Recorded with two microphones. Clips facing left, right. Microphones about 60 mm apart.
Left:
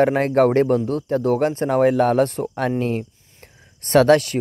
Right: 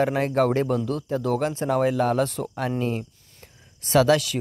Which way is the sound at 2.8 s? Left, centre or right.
Left.